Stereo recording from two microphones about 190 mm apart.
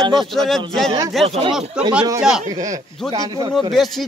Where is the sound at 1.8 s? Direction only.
5° right (ahead or behind).